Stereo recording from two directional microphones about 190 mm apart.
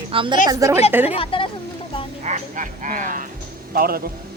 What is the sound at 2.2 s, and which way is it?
Speech, 40° right (ahead or behind).